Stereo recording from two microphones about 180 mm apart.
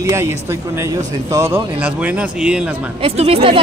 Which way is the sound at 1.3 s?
15° right (ahead or behind).